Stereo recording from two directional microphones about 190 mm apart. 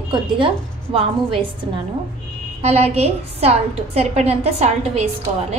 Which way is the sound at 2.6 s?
35° right (ahead or behind).